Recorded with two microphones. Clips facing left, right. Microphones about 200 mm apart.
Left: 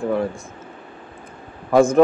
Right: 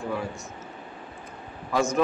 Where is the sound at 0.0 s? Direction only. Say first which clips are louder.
Left 9 dB; 50° left (ahead or behind).